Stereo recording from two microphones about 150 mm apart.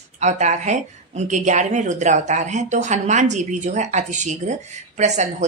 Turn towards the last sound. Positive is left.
turn(degrees=-50)  # may be behind; listen again after turning